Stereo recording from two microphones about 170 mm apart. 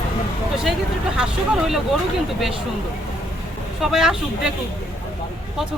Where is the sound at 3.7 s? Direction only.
5° right (ahead or behind).